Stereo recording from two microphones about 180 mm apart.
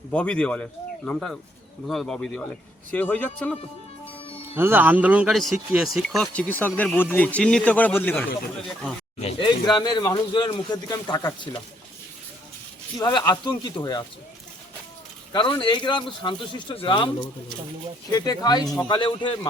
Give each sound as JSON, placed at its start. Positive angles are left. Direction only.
{"t": 0.1, "sound": "speech", "side_deg": 5}
{"t": 4.5, "sound": "speech", "side_deg": -10}
{"t": 9.2, "sound": "speech", "side_deg": 25}
{"t": 13.0, "sound": "speech", "side_deg": 25}
{"t": 15.3, "sound": "speech", "side_deg": 25}